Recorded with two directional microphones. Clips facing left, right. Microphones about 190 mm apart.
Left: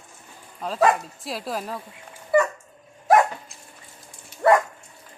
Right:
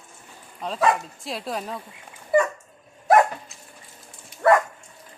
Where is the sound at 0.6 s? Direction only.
5° left (ahead or behind).